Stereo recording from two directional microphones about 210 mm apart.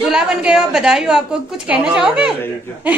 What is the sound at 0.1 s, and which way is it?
A woman's voice, 5° right (ahead or behind).